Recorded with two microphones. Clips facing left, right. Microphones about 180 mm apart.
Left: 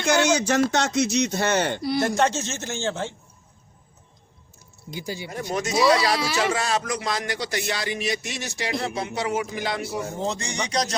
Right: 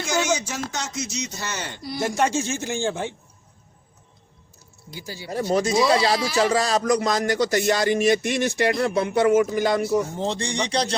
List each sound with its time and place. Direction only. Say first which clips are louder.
0.0 s speech: left 3 dB; 65° left (ahead or behind)
2.0 s a man's voice: right 2 dB; 10° right (ahead or behind)
4.9 s speech: left 4 dB; 20° left (ahead or behind)
5.3 s speech: right 6 dB; 35° right (ahead or behind)
10.2 s speech: right 3 dB; 30° right (ahead or behind)